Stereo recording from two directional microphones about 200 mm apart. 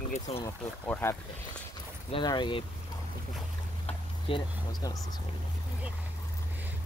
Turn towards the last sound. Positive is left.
turn(degrees=20)  # may be behind; listen again after turning